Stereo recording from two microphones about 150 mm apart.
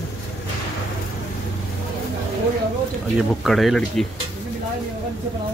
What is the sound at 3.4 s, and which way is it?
Speech, centre (ahead or behind).